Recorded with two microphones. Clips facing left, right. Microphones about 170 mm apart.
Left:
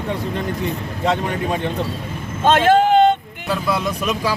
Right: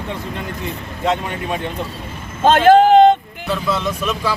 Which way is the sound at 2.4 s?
35° right (ahead or behind).